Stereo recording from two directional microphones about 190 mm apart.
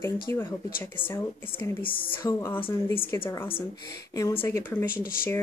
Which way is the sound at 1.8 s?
25° left (ahead or behind).